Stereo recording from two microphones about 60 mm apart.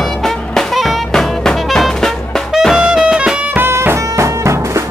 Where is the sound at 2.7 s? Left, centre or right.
Centre.